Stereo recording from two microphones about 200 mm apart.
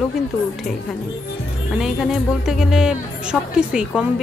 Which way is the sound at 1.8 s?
Centre (ahead or behind).